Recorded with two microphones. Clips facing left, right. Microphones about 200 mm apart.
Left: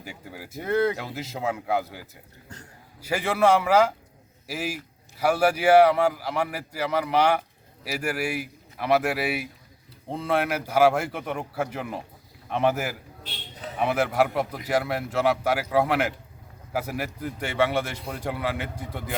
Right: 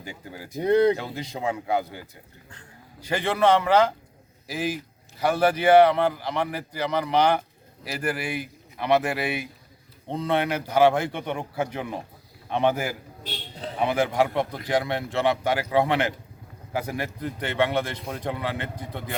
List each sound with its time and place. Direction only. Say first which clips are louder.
0.0 s speech: right 1 dB; 5° left (ahead or behind)
0.6 s speech: right 5 dB; 15° right (ahead or behind)
0.9 s a man's voice: right 1 dB; 5° left (ahead or behind)
13.6 s a sound: right 1 dB; 30° right (ahead or behind)
13.8 s a man's voice: even; 5° left (ahead or behind)